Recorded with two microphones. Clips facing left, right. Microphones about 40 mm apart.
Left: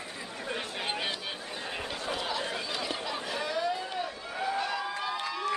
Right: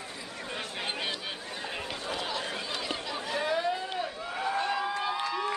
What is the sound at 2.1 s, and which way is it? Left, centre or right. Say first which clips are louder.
Chatter: left 1 dB; centre.